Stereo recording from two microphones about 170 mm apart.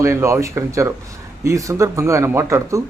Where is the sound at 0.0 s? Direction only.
15° right (ahead or behind).